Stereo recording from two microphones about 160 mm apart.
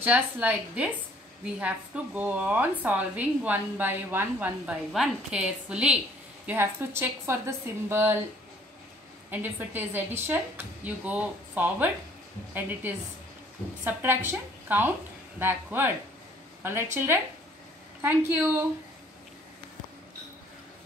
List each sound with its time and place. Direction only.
0.0 s a woman's voice: 10° right (ahead or behind)
2.1 s a woman's voice: 10° right (ahead or behind)
9.3 s a woman's voice: 10° right (ahead or behind)